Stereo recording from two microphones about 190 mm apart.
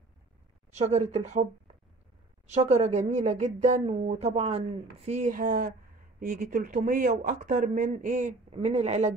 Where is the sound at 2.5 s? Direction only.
35° right (ahead or behind).